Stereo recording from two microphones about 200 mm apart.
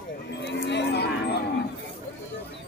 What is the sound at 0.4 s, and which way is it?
Livestock, 60° left (ahead or behind).